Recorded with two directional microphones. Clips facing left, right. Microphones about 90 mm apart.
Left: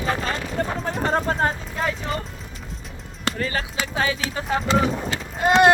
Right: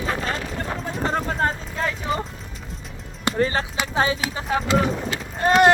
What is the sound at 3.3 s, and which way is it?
Speech, 30° right (ahead or behind).